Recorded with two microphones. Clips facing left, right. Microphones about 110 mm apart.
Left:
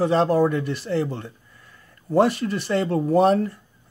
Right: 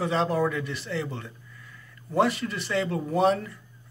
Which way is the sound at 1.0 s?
30° left (ahead or behind).